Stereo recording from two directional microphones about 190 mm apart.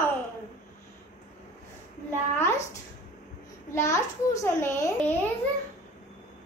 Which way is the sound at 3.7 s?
15° left (ahead or behind).